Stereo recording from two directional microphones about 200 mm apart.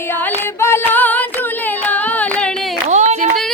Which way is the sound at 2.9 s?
35° right (ahead or behind).